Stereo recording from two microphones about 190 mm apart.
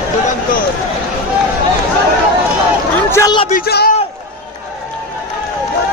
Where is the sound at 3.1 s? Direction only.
20° left (ahead or behind).